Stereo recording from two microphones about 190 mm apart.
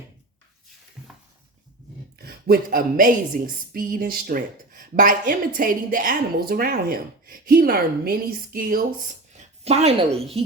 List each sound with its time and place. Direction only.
2.1 s a woman's voice: 55° right (ahead or behind)
9.6 s speech: 35° right (ahead or behind)